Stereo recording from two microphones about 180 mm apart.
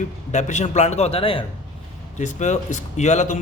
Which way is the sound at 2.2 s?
40° left (ahead or behind).